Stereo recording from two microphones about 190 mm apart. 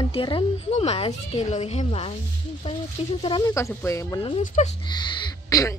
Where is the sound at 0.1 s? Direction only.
30° left (ahead or behind).